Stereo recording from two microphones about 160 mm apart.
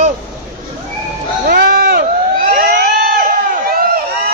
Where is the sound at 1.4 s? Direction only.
65° right (ahead or behind).